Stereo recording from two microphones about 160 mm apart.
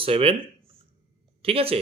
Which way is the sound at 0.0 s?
35° right (ahead or behind).